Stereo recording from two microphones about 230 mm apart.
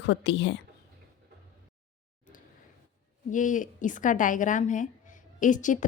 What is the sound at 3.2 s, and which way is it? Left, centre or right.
Speech, left.